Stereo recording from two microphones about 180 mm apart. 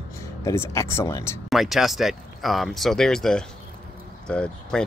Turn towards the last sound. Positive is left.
turn(degrees=5)  # may be behind; listen again after turning